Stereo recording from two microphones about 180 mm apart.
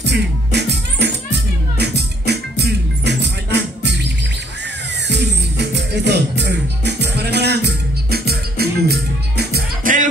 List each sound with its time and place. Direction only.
0.0 s music: 70° right (ahead or behind); by 10.0 s 55° right (ahead or behind)